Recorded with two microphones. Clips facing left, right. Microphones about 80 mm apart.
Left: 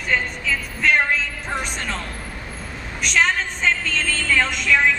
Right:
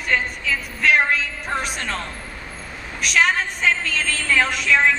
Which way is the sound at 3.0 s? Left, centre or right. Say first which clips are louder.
Right 1 dB; centre.